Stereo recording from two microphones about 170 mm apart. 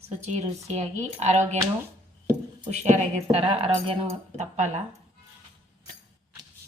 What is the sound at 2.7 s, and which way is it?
Speech, 40° right (ahead or behind).